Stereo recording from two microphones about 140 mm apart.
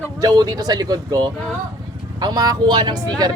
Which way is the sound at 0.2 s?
25° right (ahead or behind).